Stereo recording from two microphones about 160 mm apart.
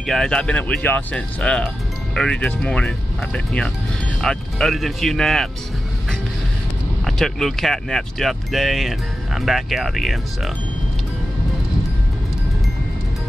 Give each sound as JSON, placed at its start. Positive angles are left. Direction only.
{"t": 0.0, "sound": "speech", "side_deg": 0}
{"t": 7.1, "sound": "speech", "side_deg": 0}